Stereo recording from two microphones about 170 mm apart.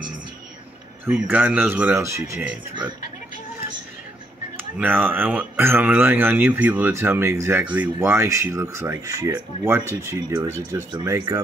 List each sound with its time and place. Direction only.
1.1 s speech: 10° right (ahead or behind)
4.6 s speech: 10° right (ahead or behind)
10.9 s speech: 25° right (ahead or behind)